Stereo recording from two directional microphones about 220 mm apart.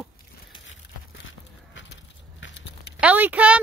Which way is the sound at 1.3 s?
55° left (ahead or behind).